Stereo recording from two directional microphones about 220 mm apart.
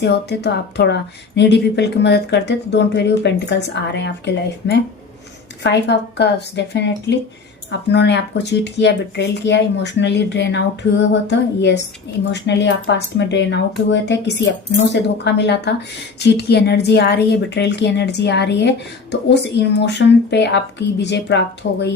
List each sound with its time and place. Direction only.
0.0 s speech: 50° left (ahead or behind)